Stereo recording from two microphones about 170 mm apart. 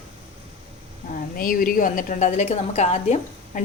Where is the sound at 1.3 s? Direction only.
55° left (ahead or behind).